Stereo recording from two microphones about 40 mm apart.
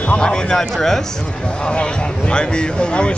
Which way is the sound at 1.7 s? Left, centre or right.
Left.